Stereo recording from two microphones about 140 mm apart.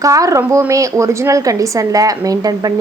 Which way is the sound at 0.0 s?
25° right (ahead or behind).